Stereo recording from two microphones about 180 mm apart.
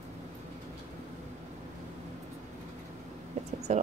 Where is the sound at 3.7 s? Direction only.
40° right (ahead or behind).